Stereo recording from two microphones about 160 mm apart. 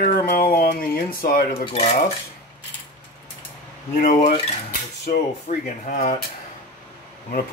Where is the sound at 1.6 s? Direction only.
35° left (ahead or behind).